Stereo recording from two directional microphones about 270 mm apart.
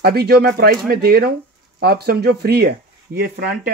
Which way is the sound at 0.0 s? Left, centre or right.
Right.